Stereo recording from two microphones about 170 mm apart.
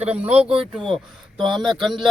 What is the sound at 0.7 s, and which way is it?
Speech, centre (ahead or behind).